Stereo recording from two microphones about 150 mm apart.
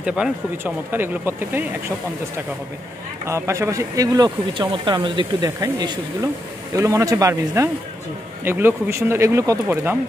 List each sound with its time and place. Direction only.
0.0 s speech: 5° right (ahead or behind)
3.3 s speech: 20° right (ahead or behind)